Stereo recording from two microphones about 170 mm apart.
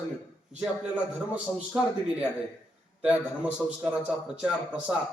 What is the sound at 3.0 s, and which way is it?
A man's voice, 5° right (ahead or behind).